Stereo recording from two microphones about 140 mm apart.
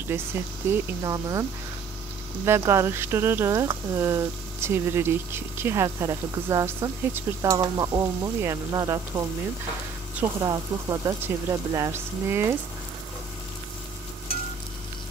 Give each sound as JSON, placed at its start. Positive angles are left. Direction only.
{"t": 0.1, "sound": "speech", "side_deg": -15}
{"t": 2.4, "sound": "speech", "side_deg": -20}
{"t": 10.4, "sound": "speech", "side_deg": -25}